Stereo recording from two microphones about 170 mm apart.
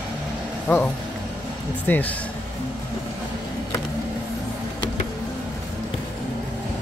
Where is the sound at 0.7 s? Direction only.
10° left (ahead or behind).